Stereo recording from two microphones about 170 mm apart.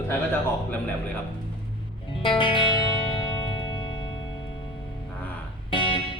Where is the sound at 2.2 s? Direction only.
30° left (ahead or behind).